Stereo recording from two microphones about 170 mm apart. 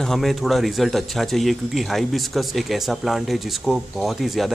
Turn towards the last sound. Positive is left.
turn(degrees=0)  # may be behind; listen again after turning